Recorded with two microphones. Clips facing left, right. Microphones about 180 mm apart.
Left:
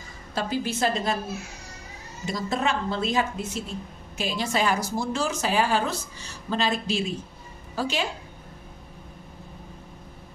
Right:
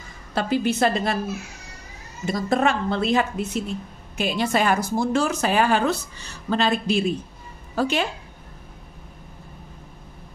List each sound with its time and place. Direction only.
0.3 s speech: 65° right (ahead or behind)
2.3 s a woman's voice: 55° right (ahead or behind)